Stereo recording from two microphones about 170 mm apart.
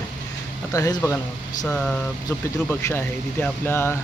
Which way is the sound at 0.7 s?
20° left (ahead or behind).